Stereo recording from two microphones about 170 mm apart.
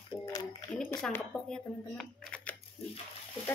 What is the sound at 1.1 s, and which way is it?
Speech, 5° left (ahead or behind).